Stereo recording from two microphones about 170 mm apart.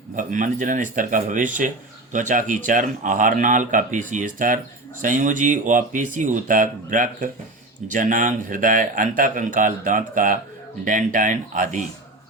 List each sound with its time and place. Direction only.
0.2 s speech: 50° right (ahead or behind)